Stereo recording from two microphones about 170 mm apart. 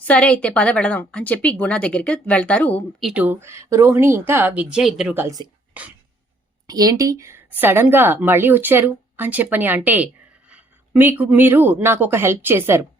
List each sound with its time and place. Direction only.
0.0 s speech: 5° left (ahead or behind)
3.0 s a woman's voice: 5° right (ahead or behind)
6.7 s a woman's voice: 20° right (ahead or behind)